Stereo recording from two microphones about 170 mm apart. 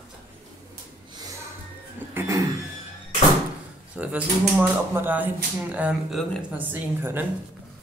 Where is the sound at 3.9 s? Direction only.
10° right (ahead or behind).